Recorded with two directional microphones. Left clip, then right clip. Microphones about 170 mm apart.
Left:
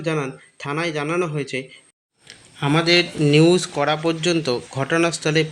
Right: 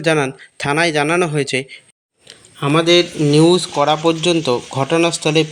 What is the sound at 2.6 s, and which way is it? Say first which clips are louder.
Speech: right 4 dB; 10° right (ahead or behind).